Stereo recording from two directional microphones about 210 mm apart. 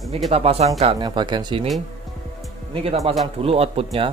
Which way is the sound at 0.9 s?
20° right (ahead or behind).